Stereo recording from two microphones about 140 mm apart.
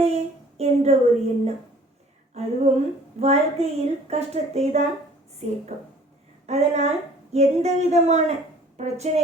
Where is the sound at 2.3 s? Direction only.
50° right (ahead or behind).